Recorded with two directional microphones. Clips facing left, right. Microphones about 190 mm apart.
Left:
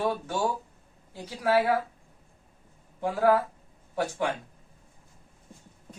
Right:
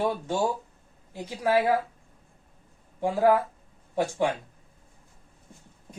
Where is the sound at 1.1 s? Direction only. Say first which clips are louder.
Right 1 dB; 20° right (ahead or behind).